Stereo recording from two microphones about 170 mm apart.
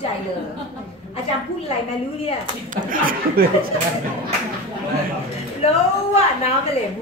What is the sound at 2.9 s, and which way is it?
Speech, 55° right (ahead or behind).